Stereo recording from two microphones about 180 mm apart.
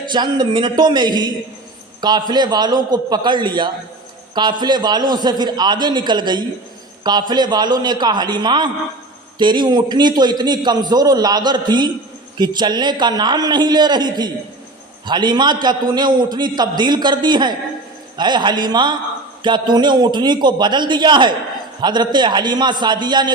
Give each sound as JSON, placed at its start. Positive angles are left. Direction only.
{"t": 0.0, "sound": "a man's voice", "side_deg": -25}